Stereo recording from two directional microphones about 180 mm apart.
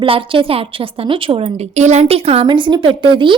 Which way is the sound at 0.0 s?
30° right (ahead or behind).